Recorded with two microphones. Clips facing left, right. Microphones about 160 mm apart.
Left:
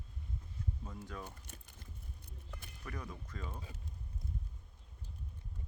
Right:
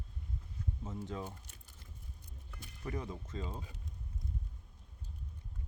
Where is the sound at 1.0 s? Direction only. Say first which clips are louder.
Right 5 dB; 20° right (ahead or behind).